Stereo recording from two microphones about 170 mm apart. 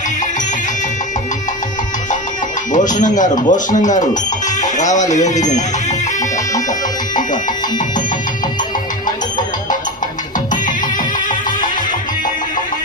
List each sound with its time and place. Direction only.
2.7 s speech: 50° left (ahead or behind)